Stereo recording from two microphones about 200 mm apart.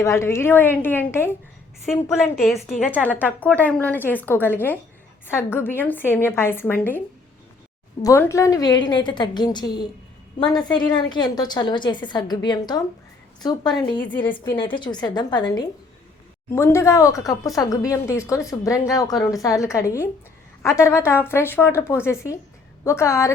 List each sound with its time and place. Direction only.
0.0 s speech: 15° left (ahead or behind)
2.6 s a woman's voice: centre (ahead or behind)
3.0 s speech: 10° left (ahead or behind)
8.0 s a woman's voice: 15° left (ahead or behind)
10.9 s a woman's voice: 20° left (ahead or behind)